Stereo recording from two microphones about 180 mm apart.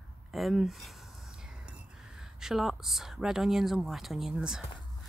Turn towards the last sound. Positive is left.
turn(degrees=-5)  # may be behind; listen again after turning